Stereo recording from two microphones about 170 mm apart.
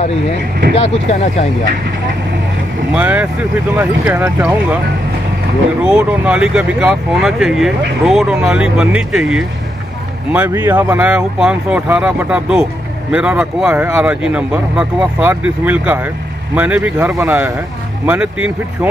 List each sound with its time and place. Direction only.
0.7 s speech: 40° left (ahead or behind)
2.9 s speech: 5° right (ahead or behind)
5.9 s speech: 5° right (ahead or behind)